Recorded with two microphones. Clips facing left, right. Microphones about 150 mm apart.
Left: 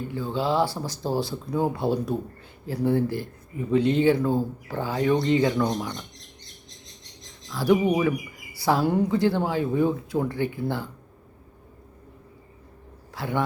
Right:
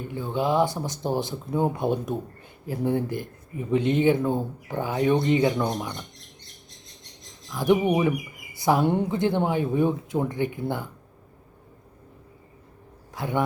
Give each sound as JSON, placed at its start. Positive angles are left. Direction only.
{"t": 0.1, "sound": "speech", "side_deg": -20}
{"t": 7.5, "sound": "speech", "side_deg": -20}
{"t": 13.1, "sound": "a man's voice", "side_deg": -20}